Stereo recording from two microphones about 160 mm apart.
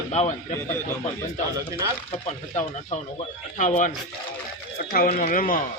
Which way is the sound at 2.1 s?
45° left (ahead or behind).